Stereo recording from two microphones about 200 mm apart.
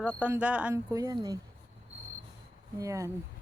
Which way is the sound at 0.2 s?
5° right (ahead or behind).